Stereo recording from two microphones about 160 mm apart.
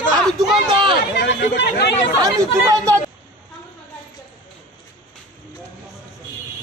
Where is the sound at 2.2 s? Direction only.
20° right (ahead or behind).